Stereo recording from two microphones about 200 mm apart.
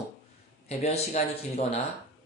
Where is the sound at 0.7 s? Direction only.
35° left (ahead or behind).